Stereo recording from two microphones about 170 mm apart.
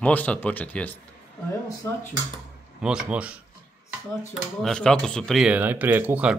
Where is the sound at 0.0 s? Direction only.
10° left (ahead or behind).